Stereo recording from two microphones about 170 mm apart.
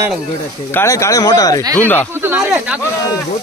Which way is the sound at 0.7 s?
20° left (ahead or behind).